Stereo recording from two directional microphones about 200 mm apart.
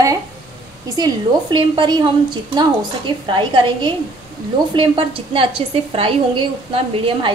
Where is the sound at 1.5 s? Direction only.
25° right (ahead or behind).